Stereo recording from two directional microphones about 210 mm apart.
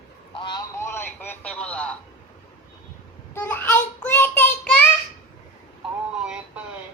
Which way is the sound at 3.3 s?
10° left (ahead or behind).